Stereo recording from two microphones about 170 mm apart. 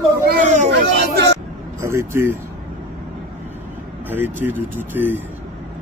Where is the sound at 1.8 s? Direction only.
15° right (ahead or behind).